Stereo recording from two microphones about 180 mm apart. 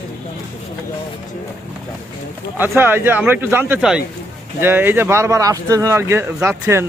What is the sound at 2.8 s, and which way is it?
Speech, 10° right (ahead or behind).